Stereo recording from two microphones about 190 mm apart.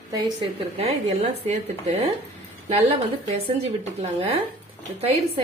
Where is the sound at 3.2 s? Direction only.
35° right (ahead or behind).